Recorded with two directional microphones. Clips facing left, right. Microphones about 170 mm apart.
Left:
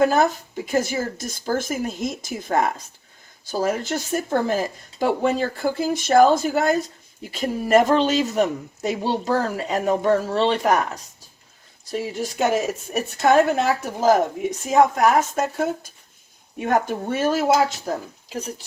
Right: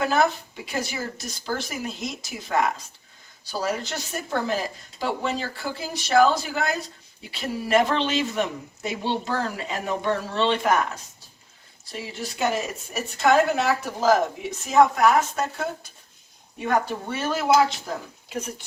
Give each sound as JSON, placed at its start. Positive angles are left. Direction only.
{"t": 0.0, "sound": "speech", "side_deg": 45}
{"t": 11.9, "sound": "speech", "side_deg": 45}
{"t": 18.3, "sound": "speech", "side_deg": 35}